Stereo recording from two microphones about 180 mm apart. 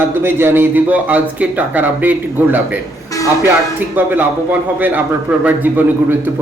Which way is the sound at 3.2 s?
20° left (ahead or behind).